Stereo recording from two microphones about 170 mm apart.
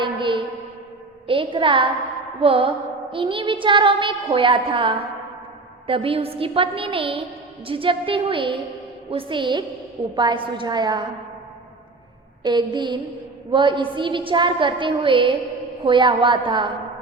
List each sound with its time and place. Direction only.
0.0 s a woman's voice: 30° right (ahead or behind)
1.3 s music: 30° right (ahead or behind)
9.0 s a woman's voice: 30° right (ahead or behind)
12.4 s a woman's voice: 25° right (ahead or behind)